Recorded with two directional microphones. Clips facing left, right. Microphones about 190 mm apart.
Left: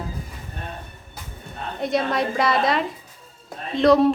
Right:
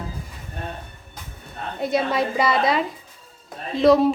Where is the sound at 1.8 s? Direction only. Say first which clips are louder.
Right 1 dB; centre (ahead or behind).